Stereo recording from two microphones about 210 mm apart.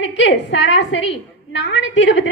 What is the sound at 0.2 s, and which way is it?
A woman's voice, 60° left (ahead or behind).